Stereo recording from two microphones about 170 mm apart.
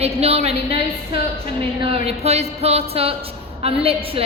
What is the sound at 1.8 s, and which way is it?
A woman's voice, 35° right (ahead or behind).